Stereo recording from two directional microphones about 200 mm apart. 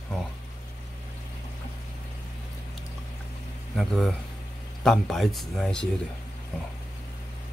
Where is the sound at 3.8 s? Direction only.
Centre (ahead or behind).